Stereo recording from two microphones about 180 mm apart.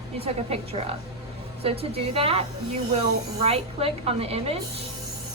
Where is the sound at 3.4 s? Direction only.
35° right (ahead or behind).